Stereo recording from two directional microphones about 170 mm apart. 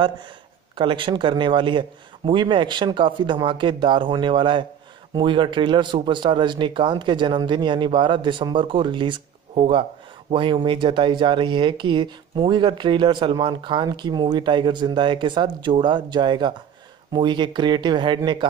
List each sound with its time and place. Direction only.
0.7 s speech: 30° right (ahead or behind)